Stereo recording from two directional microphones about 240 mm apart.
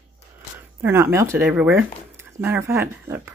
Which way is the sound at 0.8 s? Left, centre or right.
Centre.